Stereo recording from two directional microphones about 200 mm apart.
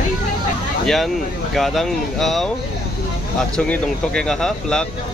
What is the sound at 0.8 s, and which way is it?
Speech, centre (ahead or behind).